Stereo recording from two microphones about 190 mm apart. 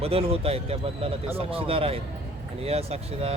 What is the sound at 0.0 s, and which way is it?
Speech, 30° right (ahead or behind).